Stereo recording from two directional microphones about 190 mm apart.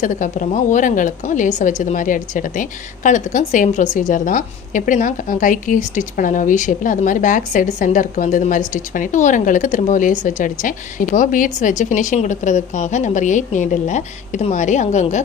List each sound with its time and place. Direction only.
0.0 s a woman's voice: 40° left (ahead or behind)